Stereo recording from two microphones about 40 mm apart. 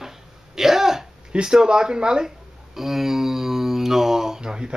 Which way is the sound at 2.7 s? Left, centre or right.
Centre.